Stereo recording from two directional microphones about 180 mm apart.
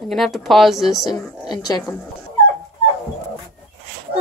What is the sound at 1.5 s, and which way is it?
Speech, 20° left (ahead or behind).